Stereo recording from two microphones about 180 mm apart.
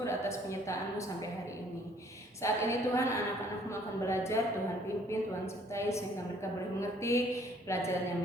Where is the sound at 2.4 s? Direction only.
15° left (ahead or behind).